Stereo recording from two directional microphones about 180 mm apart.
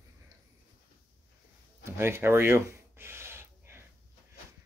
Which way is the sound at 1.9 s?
15° right (ahead or behind).